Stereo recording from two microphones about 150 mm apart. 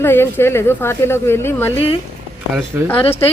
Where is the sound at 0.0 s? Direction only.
15° left (ahead or behind).